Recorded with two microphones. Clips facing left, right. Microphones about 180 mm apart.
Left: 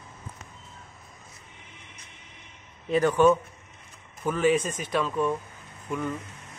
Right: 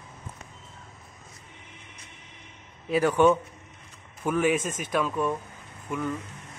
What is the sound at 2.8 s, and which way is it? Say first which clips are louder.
Speech: even; 10° right (ahead or behind).